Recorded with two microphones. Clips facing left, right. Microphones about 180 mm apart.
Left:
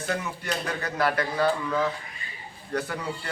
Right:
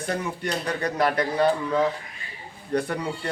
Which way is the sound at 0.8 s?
35° right (ahead or behind).